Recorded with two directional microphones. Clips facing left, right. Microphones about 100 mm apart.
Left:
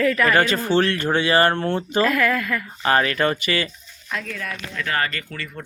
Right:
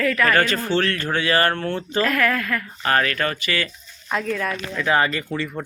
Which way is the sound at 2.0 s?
10° left (ahead or behind).